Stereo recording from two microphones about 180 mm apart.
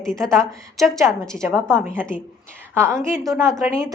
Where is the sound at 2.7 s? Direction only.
15° right (ahead or behind).